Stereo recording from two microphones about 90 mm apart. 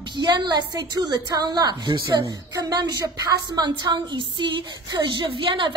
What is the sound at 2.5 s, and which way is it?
A woman's voice, 45° right (ahead or behind).